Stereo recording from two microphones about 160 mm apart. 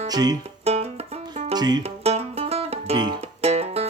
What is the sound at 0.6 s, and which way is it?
Music, 40° right (ahead or behind).